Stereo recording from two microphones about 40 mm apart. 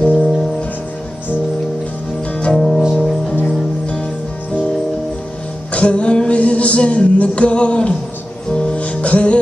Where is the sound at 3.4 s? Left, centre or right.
Left.